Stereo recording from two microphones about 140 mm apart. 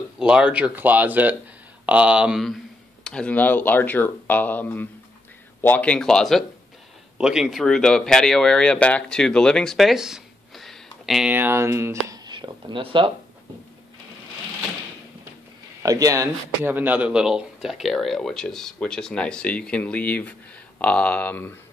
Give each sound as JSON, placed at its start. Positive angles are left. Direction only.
{"t": 0.2, "sound": "speech", "side_deg": -5}
{"t": 11.3, "sound": "speech", "side_deg": -15}
{"t": 12.3, "sound": "speech", "side_deg": -35}
{"t": 15.8, "sound": "speech", "side_deg": -25}